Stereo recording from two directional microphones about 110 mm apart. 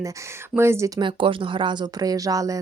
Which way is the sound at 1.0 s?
50° right (ahead or behind).